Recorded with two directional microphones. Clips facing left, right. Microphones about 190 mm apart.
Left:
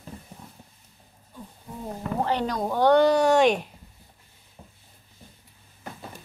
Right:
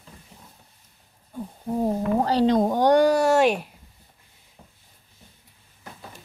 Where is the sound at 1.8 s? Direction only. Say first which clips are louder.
Right 5 dB; 35° right (ahead or behind); by 3.7 s 5° right (ahead or behind).